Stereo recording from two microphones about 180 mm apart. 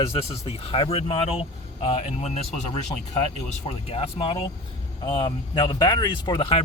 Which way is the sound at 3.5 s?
35° left (ahead or behind).